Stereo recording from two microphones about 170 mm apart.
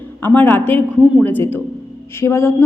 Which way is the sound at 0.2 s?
10° left (ahead or behind).